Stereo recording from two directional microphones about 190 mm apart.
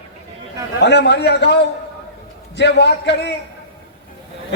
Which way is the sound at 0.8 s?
65° left (ahead or behind).